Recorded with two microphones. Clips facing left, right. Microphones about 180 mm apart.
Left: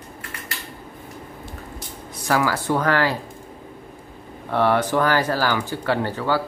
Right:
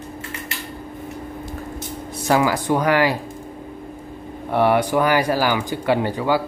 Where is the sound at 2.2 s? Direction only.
15° right (ahead or behind).